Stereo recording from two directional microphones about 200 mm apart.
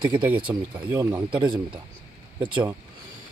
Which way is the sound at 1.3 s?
25° right (ahead or behind).